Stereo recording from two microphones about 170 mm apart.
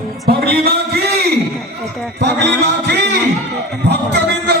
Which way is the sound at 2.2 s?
80° right.